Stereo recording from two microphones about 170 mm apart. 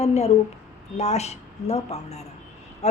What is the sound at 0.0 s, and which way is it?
A woman's voice, 40° left (ahead or behind).